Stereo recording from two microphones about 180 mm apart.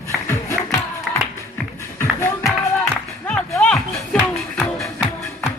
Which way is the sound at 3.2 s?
5° left (ahead or behind).